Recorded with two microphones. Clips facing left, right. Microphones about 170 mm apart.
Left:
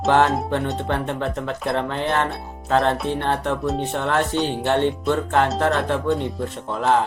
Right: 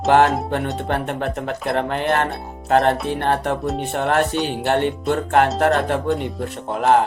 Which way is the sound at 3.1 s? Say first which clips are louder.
Right 2 dB; 55° right (ahead or behind).